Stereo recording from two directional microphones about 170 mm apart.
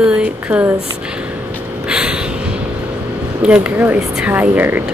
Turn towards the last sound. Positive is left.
turn(degrees=-10)  # may be behind; listen again after turning